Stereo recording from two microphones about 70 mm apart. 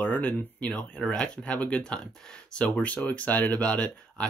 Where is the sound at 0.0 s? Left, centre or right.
Left.